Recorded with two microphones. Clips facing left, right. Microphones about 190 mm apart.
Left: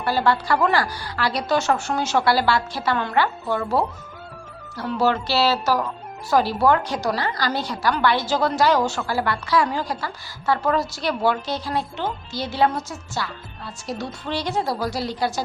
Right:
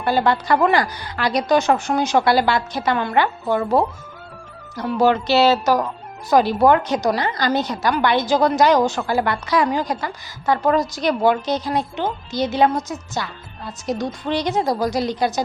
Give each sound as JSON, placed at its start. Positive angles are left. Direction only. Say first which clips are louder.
{"t": 0.0, "sound": "a woman's voice", "louder": "right 2 dB", "side_deg": -20}